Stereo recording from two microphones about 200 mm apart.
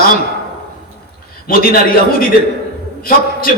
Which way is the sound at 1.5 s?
45° left (ahead or behind).